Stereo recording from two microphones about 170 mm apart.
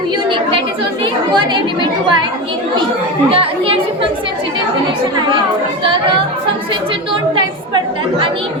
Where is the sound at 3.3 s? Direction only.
35° right (ahead or behind).